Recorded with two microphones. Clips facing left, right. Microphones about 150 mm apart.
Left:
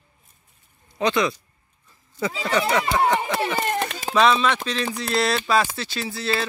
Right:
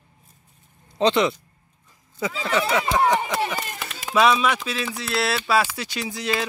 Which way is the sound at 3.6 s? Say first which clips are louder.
Left 10 dB; 60° left (ahead or behind).